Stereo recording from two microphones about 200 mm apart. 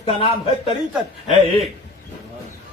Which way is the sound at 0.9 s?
Centre (ahead or behind).